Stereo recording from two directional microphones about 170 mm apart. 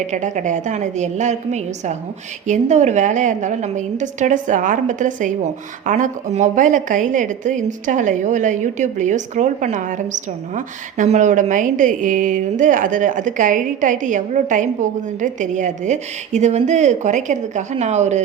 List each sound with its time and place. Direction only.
0.1 s a woman's voice: 45° right (ahead or behind)